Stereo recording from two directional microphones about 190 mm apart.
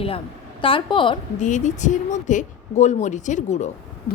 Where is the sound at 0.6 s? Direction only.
25° left (ahead or behind).